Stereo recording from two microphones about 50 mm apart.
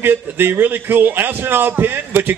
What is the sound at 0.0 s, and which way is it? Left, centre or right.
Speech, right.